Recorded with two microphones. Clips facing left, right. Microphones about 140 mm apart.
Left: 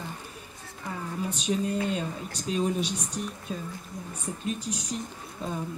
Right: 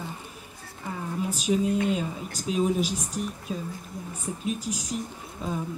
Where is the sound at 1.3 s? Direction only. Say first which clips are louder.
Right 4 dB; centre (ahead or behind).